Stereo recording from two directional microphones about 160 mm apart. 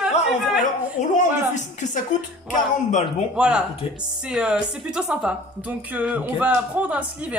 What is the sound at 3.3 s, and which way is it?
A woman's voice, 5° right (ahead or behind).